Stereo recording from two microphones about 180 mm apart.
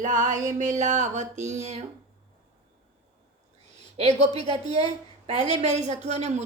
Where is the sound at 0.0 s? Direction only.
45° right (ahead or behind).